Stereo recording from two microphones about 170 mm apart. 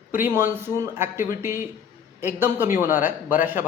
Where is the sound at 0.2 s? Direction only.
15° right (ahead or behind).